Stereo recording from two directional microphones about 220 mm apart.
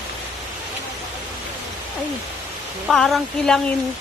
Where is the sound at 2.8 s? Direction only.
Centre (ahead or behind).